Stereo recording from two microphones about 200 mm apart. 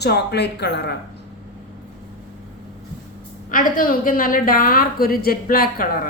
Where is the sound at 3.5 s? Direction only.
45° left (ahead or behind).